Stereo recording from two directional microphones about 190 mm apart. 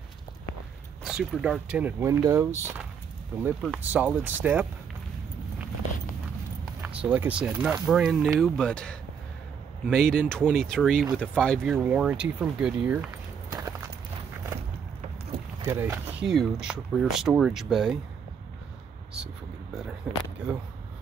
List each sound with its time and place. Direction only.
1.0 s speech: 5° right (ahead or behind)
3.4 s speech: 5° right (ahead or behind)
7.1 s speech: 5° right (ahead or behind)
13.5 s walk: 20° right (ahead or behind)
15.6 s speech: 15° right (ahead or behind)
20.1 s speech: 10° right (ahead or behind)